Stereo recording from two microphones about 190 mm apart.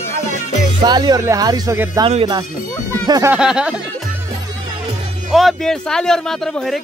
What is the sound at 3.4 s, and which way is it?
Speech, 5° right (ahead or behind).